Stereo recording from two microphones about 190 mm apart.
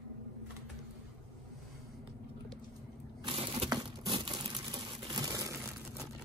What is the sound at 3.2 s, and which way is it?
Crushing, 30° right (ahead or behind).